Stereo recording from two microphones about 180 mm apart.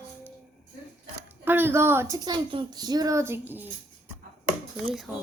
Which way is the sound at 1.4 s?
10° right (ahead or behind).